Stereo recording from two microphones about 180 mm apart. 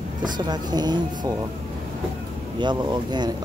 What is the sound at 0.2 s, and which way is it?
Speech, 25° right (ahead or behind).